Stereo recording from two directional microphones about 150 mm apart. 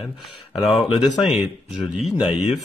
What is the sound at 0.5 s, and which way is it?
Speech, centre (ahead or behind).